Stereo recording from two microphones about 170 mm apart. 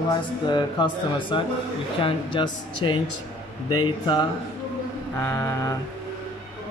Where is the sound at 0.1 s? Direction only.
25° left (ahead or behind).